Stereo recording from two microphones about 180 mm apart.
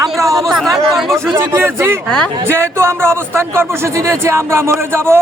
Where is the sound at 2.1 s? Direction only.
5° left (ahead or behind).